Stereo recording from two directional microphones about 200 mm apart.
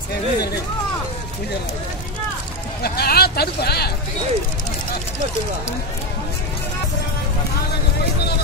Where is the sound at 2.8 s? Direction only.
50° left (ahead or behind).